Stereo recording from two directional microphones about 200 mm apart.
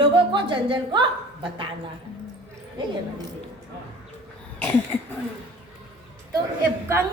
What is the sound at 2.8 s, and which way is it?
Speech, 20° right (ahead or behind).